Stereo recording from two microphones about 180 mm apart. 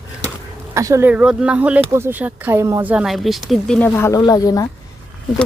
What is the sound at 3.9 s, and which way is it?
Speech, 15° left (ahead or behind).